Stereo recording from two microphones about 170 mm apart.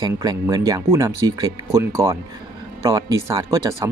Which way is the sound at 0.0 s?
25° right (ahead or behind).